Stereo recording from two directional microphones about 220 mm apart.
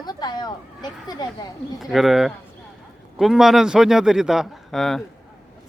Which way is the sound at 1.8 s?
Centre (ahead or behind).